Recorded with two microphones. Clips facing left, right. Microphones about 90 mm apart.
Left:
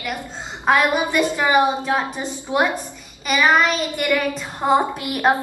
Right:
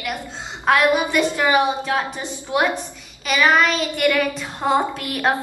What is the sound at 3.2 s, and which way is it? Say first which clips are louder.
A woman's voice: even; 15° left (ahead or behind).